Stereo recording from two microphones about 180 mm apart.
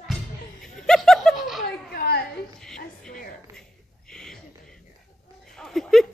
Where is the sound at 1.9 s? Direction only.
60° left (ahead or behind).